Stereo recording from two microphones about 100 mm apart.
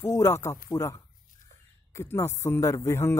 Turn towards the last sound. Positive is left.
turn(degrees=25)  # may be behind; listen again after turning